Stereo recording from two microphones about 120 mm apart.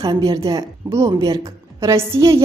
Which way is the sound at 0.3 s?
30° right (ahead or behind).